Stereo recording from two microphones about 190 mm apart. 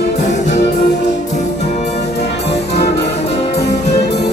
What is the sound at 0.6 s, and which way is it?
Music, 60° left (ahead or behind).